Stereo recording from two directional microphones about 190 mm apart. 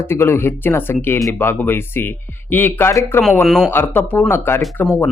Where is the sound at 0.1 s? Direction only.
10° left (ahead or behind).